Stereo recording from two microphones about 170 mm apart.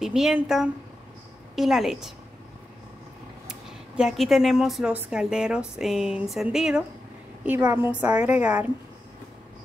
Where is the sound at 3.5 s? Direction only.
5° right (ahead or behind).